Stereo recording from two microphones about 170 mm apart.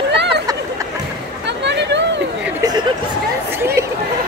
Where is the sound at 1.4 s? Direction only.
90° right.